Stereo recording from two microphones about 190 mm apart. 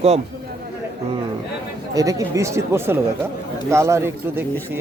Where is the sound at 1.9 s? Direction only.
15° right (ahead or behind).